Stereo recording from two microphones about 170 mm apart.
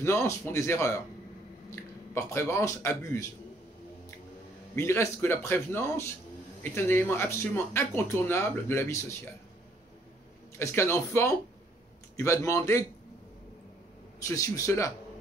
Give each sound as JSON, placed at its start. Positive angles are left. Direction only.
{"t": 0.0, "sound": "speech", "side_deg": 15}
{"t": 4.7, "sound": "speech", "side_deg": 15}
{"t": 10.6, "sound": "speech", "side_deg": 15}
{"t": 14.2, "sound": "speech", "side_deg": 20}